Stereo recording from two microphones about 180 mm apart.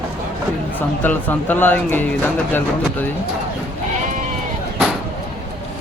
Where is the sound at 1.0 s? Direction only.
10° left (ahead or behind).